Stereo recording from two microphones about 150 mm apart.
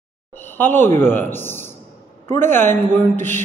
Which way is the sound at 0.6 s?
15° left (ahead or behind).